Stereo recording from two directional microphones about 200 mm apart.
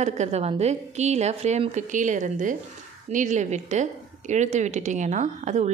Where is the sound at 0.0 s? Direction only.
35° right (ahead or behind).